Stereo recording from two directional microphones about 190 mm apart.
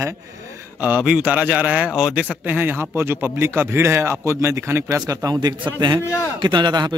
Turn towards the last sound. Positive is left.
turn(degrees=-20)  # may be behind; listen again after turning